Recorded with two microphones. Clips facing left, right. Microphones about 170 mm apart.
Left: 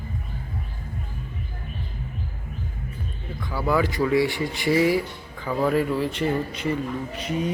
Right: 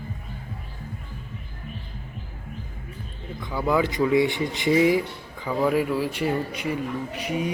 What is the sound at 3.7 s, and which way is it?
Speech, 20° right (ahead or behind).